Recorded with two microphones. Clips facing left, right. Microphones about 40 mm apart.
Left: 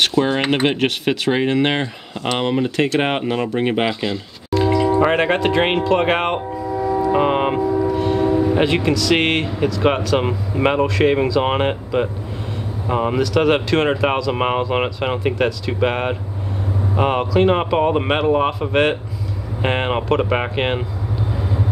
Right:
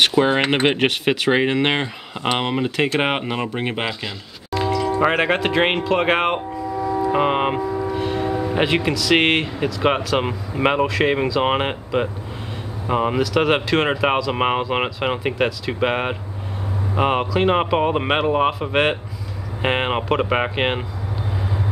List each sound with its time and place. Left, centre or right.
0.0 s speech: centre
3.7 s speech: centre
4.6 s music: centre
5.0 s speech: centre
7.0 s speech: centre
7.6 s train: centre
8.5 s speech: centre